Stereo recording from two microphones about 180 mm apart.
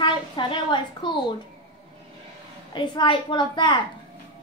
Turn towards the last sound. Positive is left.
turn(degrees=25)  # may be behind; listen again after turning